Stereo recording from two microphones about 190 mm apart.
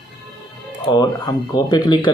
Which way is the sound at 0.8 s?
20° left (ahead or behind).